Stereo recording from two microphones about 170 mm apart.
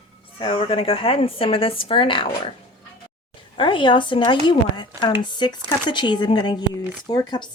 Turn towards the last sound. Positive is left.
turn(degrees=25)  # may be behind; listen again after turning